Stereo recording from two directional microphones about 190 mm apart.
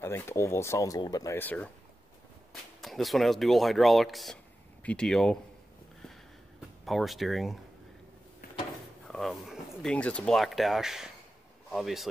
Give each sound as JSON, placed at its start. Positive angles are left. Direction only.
{"t": 0.0, "sound": "speech", "side_deg": 15}
{"t": 2.8, "sound": "speech", "side_deg": 0}
{"t": 6.9, "sound": "speech", "side_deg": 0}
{"t": 9.0, "sound": "speech", "side_deg": 0}